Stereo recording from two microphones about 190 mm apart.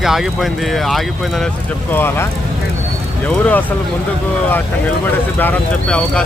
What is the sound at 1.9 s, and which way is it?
Speech, 10° left (ahead or behind).